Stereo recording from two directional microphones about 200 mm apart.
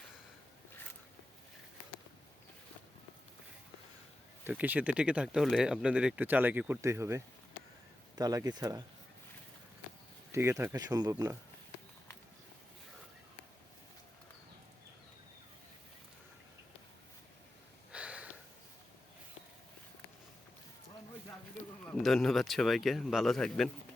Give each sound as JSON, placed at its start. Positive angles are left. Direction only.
{"t": 4.4, "sound": "speech", "side_deg": -10}
{"t": 10.3, "sound": "speech", "side_deg": -15}
{"t": 17.9, "sound": "a sound", "side_deg": -5}
{"t": 21.9, "sound": "speech", "side_deg": 0}